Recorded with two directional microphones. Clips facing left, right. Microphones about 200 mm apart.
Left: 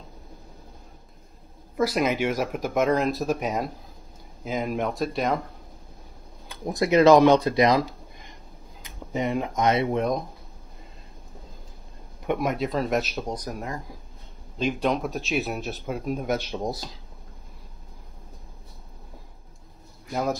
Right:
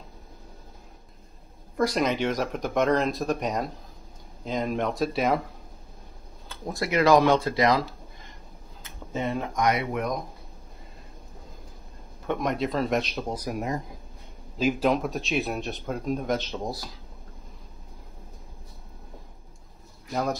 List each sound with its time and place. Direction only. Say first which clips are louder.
1.8 s speech: left 1 dB; 5° left (ahead or behind)
6.5 s speech: left 6 dB; 15° left (ahead or behind)
12.3 s speech: left 1 dB; 5° left (ahead or behind)
14.6 s speech: right 1 dB; 5° right (ahead or behind); by 16.9 s 20° left (ahead or behind)
20.1 s speech: left 1 dB; 5° left (ahead or behind)